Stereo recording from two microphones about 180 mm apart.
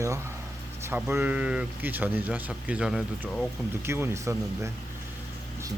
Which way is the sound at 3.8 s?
15° right (ahead or behind).